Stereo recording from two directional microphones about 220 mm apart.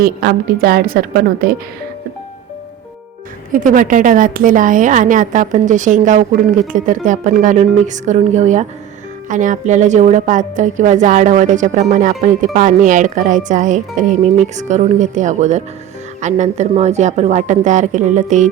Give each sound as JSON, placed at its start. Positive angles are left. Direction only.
{"t": 0.0, "sound": "a woman's voice", "side_deg": -40}
{"t": 3.5, "sound": "a woman's voice", "side_deg": -35}